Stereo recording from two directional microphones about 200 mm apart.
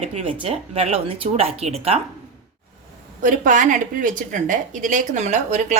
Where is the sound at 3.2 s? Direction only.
40° right (ahead or behind).